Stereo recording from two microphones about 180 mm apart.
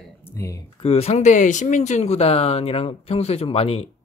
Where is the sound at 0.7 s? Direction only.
35° left (ahead or behind).